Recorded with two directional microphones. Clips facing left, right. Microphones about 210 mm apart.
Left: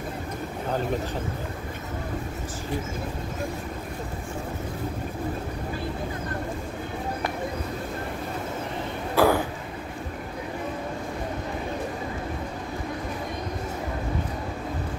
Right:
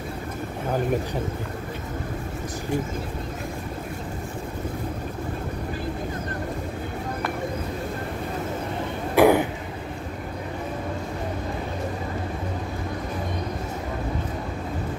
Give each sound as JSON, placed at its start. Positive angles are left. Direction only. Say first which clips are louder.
{"t": 9.1, "sound": "throat clearing", "louder": "right 4 dB", "side_deg": -20}